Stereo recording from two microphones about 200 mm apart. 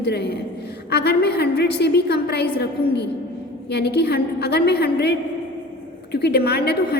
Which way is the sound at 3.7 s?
55° left (ahead or behind).